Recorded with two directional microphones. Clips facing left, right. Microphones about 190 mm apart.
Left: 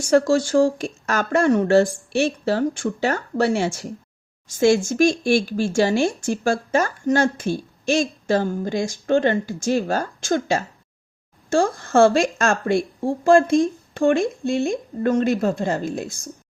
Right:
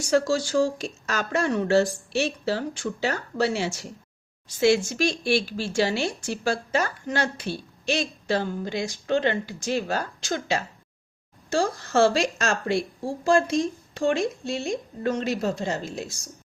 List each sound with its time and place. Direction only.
0.0 s speech: 50° left (ahead or behind)